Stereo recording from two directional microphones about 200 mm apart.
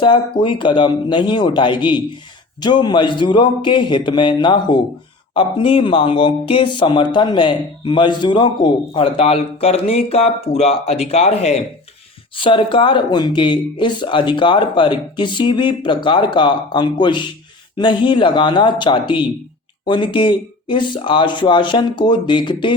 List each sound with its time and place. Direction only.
0.0 s speech: 25° left (ahead or behind)